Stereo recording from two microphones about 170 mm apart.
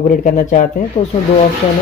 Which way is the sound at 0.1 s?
50° left (ahead or behind).